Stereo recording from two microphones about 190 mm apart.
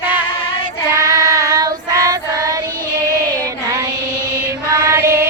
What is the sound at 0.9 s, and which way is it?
Child singing, 15° right (ahead or behind).